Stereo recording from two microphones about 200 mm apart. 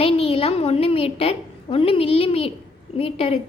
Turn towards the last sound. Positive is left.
turn(degrees=30)  # may be behind; listen again after turning